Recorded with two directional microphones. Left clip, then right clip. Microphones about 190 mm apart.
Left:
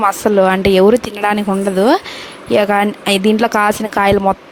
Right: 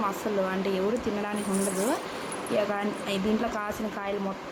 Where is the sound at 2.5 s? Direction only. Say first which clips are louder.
Left 16 dB; 60° left (ahead or behind).